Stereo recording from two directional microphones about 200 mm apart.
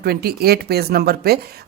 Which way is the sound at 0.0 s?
50° right (ahead or behind).